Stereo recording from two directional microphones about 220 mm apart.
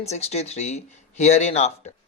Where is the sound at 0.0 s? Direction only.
30° left (ahead or behind).